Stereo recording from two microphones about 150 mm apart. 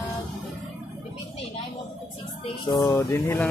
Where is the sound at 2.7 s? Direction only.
25° left (ahead or behind).